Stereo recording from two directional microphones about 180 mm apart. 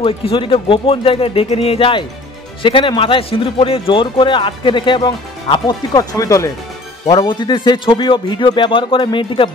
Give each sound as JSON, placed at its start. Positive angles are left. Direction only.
{"t": 0.0, "sound": "a man's voice", "side_deg": 30}